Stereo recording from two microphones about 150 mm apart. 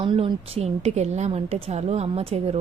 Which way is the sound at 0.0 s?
35° right (ahead or behind).